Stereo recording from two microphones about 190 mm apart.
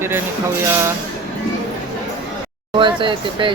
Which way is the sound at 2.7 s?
25° right (ahead or behind).